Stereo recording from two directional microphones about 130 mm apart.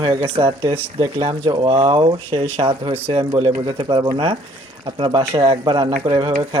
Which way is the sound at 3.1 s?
40° right (ahead or behind).